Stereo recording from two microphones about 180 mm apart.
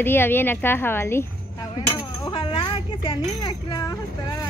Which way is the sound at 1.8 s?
25° left (ahead or behind).